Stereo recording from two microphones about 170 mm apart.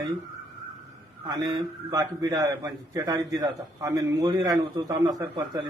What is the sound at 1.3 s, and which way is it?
A man's voice, 25° right (ahead or behind).